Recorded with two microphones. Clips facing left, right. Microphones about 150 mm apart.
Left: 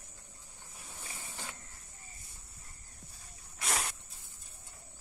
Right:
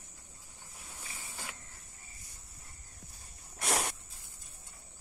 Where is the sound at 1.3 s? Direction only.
5° right (ahead or behind).